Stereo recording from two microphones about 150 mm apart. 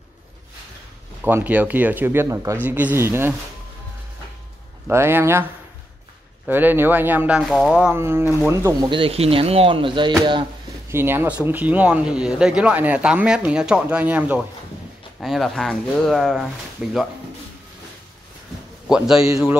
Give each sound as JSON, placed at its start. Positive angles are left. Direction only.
{"t": 1.2, "sound": "speech", "side_deg": -10}
{"t": 4.8, "sound": "speech", "side_deg": -15}
{"t": 8.8, "sound": "speech", "side_deg": -35}
{"t": 10.9, "sound": "speech", "side_deg": -15}
{"t": 15.1, "sound": "speech", "side_deg": 0}
{"t": 18.9, "sound": "speech", "side_deg": -5}
{"t": 19.2, "sound": "speech", "side_deg": -20}